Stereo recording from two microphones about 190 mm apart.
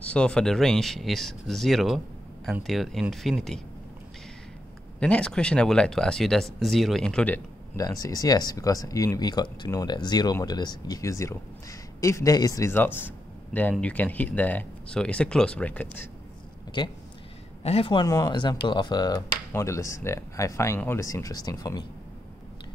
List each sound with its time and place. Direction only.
0.0 s speech: 5° left (ahead or behind)
5.0 s speech: 5° left (ahead or behind)
16.8 s speech: 25° left (ahead or behind)